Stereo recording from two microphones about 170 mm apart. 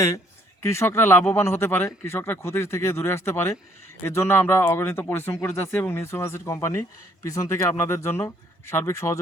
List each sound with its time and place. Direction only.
0.6 s speech: 15° left (ahead or behind)